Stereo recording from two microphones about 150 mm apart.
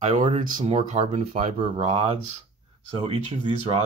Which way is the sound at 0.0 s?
55° right (ahead or behind).